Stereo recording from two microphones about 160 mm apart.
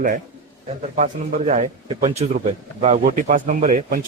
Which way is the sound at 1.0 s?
50° right (ahead or behind).